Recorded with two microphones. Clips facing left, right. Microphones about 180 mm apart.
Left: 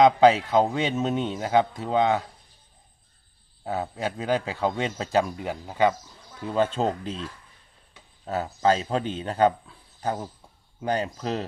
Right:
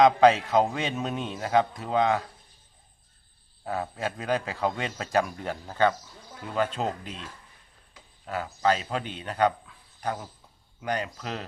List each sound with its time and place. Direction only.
0.0 s a man's voice: 25° left (ahead or behind)
3.6 s a man's voice: 25° left (ahead or behind)
5.4 s speech: 10° left (ahead or behind)
6.4 s a man's voice: 25° left (ahead or behind)
8.3 s a man's voice: 25° left (ahead or behind)